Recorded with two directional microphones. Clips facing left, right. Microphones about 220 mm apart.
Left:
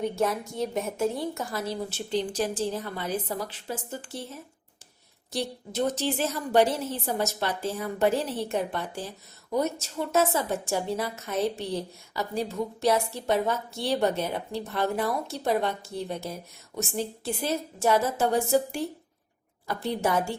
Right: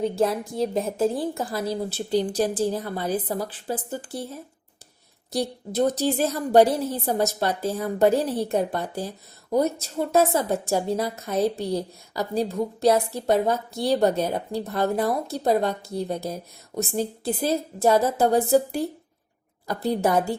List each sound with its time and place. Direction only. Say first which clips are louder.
0.0 s a woman's voice: right 4 dB; 30° right (ahead or behind)